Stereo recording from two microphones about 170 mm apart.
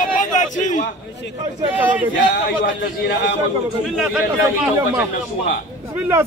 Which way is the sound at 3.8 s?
Centre (ahead or behind).